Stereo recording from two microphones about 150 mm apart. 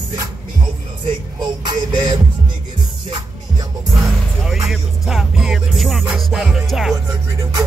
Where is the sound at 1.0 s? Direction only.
30° right (ahead or behind).